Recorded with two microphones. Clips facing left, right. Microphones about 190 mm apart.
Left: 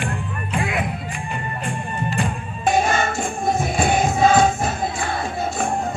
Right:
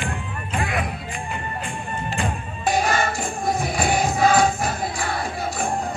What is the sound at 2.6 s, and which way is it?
Music, 25° left (ahead or behind).